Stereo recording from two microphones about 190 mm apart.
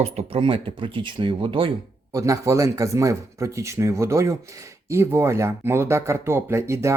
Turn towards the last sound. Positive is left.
turn(degrees=-15)  # may be behind; listen again after turning